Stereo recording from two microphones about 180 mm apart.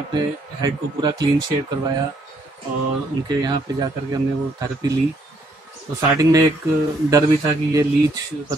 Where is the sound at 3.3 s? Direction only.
25° right (ahead or behind).